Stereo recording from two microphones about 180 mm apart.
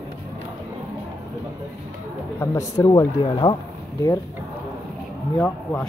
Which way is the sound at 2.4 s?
15° left (ahead or behind).